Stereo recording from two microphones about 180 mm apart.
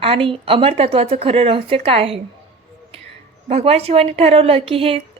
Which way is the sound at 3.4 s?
35° right (ahead or behind).